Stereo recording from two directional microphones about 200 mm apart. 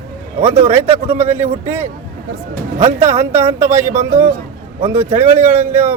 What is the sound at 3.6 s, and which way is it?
Speech, 35° right (ahead or behind).